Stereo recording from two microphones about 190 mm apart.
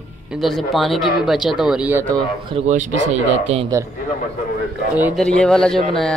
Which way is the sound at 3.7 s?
15° right (ahead or behind).